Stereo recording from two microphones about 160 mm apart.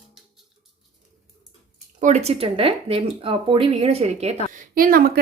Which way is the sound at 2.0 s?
40° right (ahead or behind).